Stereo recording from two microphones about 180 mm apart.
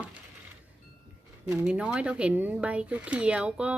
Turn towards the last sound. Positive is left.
turn(degrees=-5)  # may be behind; listen again after turning